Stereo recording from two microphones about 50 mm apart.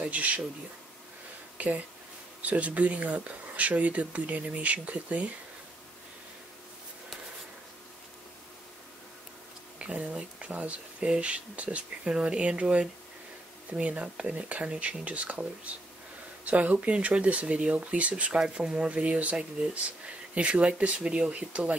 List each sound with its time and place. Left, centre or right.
0.0 s speech: right
1.6 s speech: right
9.8 s speech: right